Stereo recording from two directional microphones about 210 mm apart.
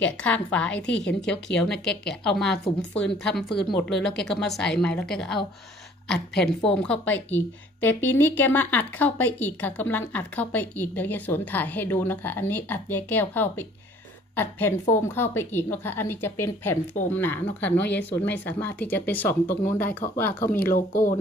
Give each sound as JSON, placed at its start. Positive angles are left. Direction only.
{"t": 0.0, "sound": "a woman's voice", "side_deg": 5}
{"t": 3.4, "sound": "speech", "side_deg": 50}
{"t": 4.3, "sound": "a woman's voice", "side_deg": 0}
{"t": 6.4, "sound": "a woman's voice", "side_deg": 5}
{"t": 20.7, "sound": "speech", "side_deg": 40}